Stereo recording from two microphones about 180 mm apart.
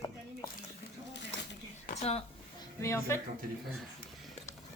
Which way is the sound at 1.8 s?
35° left (ahead or behind).